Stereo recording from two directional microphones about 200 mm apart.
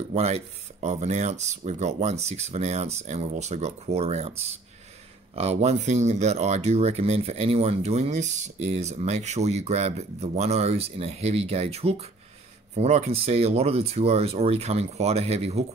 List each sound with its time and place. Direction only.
0.1 s speech: 30° right (ahead or behind)